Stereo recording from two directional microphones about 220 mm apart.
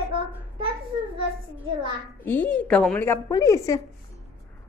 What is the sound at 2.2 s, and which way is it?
A woman's voice, 10° left (ahead or behind).